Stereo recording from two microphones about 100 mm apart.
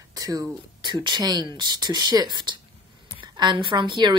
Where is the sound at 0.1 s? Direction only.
40° right (ahead or behind).